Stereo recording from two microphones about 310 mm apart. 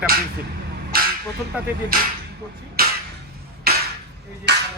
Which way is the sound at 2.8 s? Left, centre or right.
Right.